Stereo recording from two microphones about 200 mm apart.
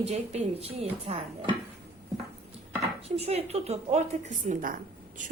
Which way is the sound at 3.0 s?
30° right (ahead or behind).